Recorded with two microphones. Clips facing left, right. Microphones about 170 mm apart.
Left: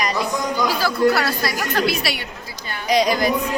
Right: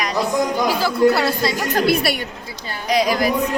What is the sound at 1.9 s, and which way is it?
Speech, 55° right (ahead or behind).